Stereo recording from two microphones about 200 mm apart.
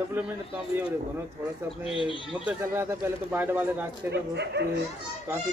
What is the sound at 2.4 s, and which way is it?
Speech, 10° right (ahead or behind).